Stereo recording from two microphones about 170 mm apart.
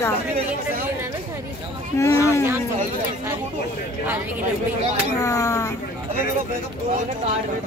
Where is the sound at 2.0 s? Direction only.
15° left (ahead or behind).